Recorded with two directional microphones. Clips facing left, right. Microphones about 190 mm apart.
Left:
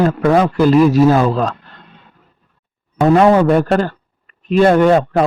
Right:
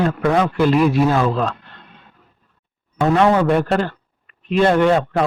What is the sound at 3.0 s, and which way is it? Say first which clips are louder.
A man's voice: left 5 dB; 40° left (ahead or behind).